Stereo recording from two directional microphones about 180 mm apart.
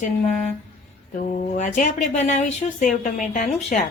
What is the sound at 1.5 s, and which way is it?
Speech, 45° left (ahead or behind).